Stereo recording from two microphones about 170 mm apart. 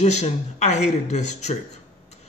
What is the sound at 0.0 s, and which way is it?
A man's voice, 40° left (ahead or behind).